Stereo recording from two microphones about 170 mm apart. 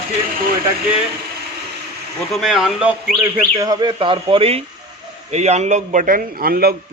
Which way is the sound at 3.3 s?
20° right (ahead or behind).